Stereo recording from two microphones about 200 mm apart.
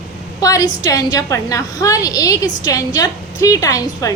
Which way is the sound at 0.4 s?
20° left (ahead or behind).